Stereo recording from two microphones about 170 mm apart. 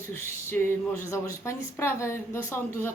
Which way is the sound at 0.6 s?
10° left (ahead or behind).